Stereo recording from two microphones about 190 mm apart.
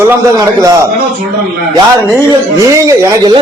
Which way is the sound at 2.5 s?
15° right (ahead or behind).